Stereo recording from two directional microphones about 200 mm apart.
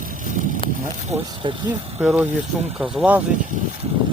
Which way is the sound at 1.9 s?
10° right (ahead or behind).